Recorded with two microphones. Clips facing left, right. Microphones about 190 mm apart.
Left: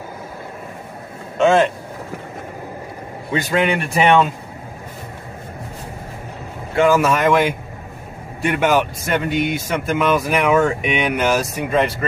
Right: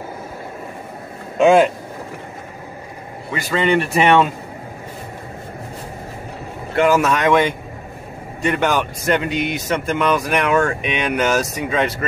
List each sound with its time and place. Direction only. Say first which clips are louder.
1.4 s speech: right 2 dB; 10° right (ahead or behind)
3.3 s speech: left 3 dB; 20° left (ahead or behind)
3.6 s speech: right 4 dB; centre (ahead or behind)
6.7 s speech: left 1 dB; centre (ahead or behind)